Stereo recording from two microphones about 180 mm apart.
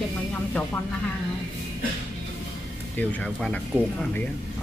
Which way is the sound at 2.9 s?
5° left (ahead or behind).